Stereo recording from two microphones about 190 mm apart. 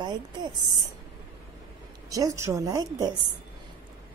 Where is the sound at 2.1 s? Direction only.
20° right (ahead or behind).